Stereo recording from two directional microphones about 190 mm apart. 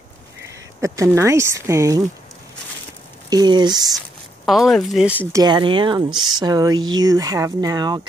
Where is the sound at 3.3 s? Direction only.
20° right (ahead or behind).